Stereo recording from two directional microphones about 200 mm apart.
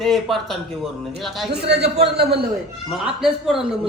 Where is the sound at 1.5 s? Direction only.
55° right (ahead or behind).